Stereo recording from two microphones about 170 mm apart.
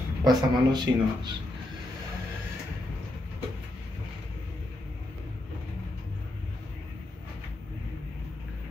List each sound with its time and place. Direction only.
0.2 s speech: 25° right (ahead or behind)